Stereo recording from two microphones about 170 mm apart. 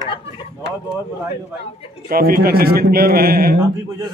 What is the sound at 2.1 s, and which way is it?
A man's voice, 60° right (ahead or behind).